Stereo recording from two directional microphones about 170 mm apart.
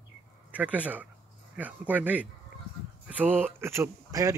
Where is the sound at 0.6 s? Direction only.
10° right (ahead or behind).